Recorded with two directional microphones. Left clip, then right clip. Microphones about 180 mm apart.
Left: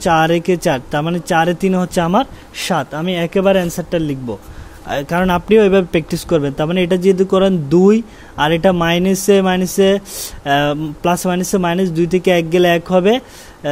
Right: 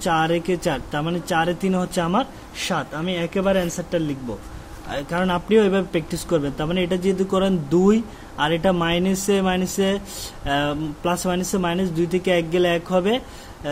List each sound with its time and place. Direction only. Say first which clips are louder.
0.0 s a man's voice: left 7 dB; 45° left (ahead or behind)